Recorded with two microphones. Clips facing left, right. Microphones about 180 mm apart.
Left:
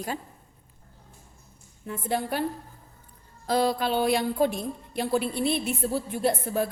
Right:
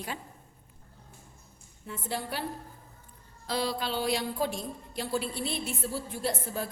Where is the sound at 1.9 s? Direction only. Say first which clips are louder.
Left 7 dB; 50° left (ahead or behind).